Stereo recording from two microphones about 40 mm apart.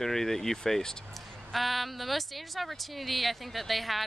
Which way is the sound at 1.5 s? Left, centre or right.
Centre.